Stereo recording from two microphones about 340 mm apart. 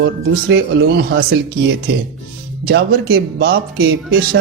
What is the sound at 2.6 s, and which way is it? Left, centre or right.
A man's voice, right.